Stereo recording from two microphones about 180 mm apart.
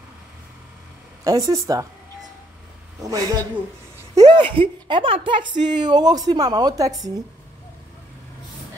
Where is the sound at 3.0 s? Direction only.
20° right (ahead or behind).